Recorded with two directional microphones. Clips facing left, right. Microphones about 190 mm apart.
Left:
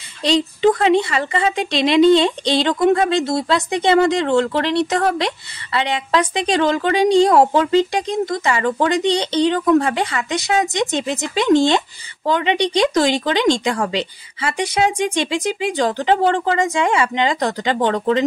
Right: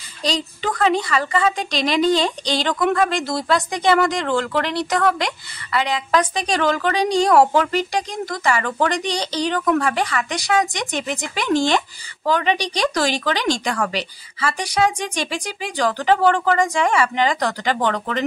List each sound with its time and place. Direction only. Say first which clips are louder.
0.2 s a woman's voice: left 8 dB; 25° left (ahead or behind)